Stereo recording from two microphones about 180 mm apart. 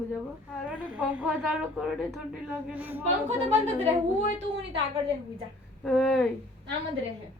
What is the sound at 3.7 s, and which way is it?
Speech, 35° right (ahead or behind).